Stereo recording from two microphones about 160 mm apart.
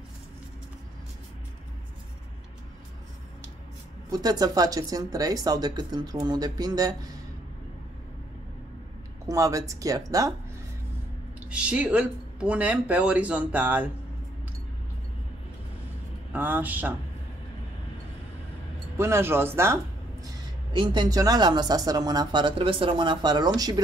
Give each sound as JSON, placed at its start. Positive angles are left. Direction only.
{"t": 4.1, "sound": "speech", "side_deg": -25}
{"t": 9.2, "sound": "speech", "side_deg": -20}
{"t": 11.5, "sound": "speech", "side_deg": -5}
{"t": 16.3, "sound": "speech", "side_deg": -10}
{"t": 18.9, "sound": "speech", "side_deg": -15}
{"t": 20.7, "sound": "speech", "side_deg": -30}